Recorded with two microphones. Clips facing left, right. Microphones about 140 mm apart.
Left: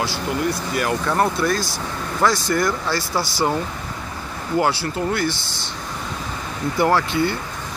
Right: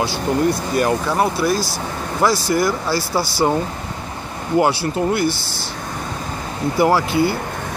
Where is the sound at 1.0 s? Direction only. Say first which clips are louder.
Right 1 dB; 5° right (ahead or behind).